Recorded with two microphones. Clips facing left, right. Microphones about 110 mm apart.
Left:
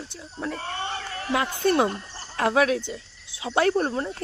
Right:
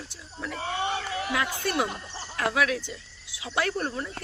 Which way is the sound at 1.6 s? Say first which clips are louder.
Left 7 dB; 35° left (ahead or behind).